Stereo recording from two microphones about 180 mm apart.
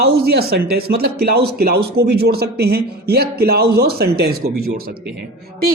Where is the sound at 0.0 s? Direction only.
60° right (ahead or behind).